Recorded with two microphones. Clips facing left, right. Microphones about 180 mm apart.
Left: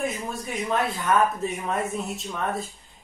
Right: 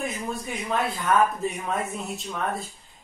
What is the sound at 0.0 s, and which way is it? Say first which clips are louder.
Speech: left 1 dB; centre (ahead or behind).